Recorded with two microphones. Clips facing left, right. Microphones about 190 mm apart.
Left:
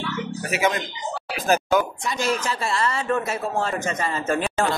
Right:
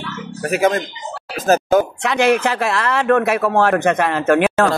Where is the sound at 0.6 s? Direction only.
50° right (ahead or behind).